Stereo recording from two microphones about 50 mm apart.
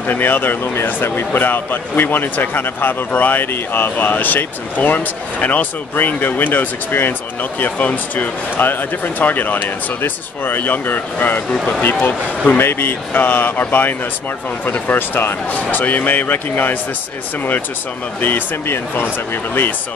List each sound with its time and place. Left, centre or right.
0.0 s speech: left
12.5 s speech: left
18.2 s speech: left